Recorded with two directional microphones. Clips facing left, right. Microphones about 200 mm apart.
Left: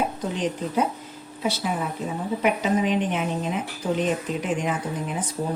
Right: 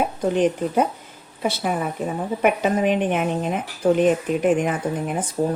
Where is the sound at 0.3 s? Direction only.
55° right (ahead or behind).